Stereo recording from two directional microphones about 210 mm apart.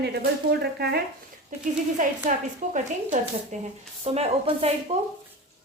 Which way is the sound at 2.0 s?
40° right (ahead or behind).